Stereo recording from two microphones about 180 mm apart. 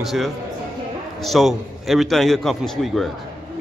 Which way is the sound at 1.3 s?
Centre (ahead or behind).